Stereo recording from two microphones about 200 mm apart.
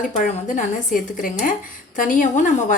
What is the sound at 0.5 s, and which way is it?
A woman's voice, 40° left (ahead or behind).